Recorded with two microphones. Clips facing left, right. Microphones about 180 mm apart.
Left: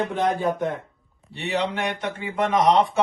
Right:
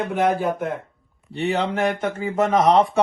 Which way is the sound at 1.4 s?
35° right (ahead or behind).